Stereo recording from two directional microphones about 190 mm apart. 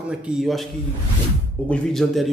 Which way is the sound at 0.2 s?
Centre (ahead or behind).